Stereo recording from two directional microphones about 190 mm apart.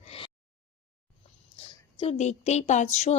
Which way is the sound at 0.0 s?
30° left (ahead or behind).